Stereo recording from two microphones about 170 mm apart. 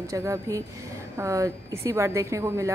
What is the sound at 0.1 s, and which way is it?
A woman's voice, 20° right (ahead or behind).